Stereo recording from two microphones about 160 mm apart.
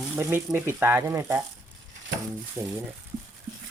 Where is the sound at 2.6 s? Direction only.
15° right (ahead or behind).